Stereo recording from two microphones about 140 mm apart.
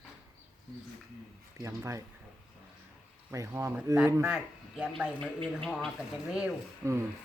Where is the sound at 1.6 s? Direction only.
20° right (ahead or behind).